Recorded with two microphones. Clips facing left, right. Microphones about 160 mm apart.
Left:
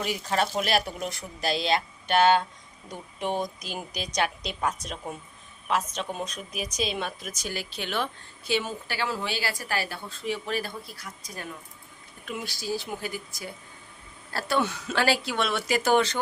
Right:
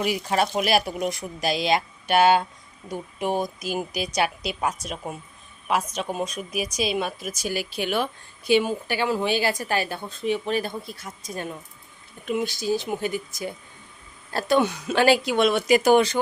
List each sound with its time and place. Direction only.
0.0 s speech: 10° right (ahead or behind)